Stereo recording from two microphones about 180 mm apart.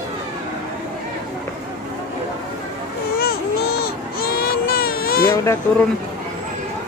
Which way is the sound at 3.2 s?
60° left (ahead or behind).